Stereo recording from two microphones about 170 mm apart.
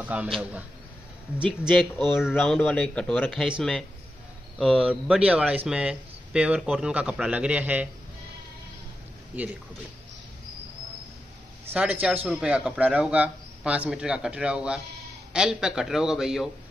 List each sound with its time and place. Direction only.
0.0 s a man's voice: 10° right (ahead or behind)
1.6 s a man's voice: centre (ahead or behind)
9.3 s a man's voice: 10° right (ahead or behind)
11.7 s a man's voice: 10° right (ahead or behind)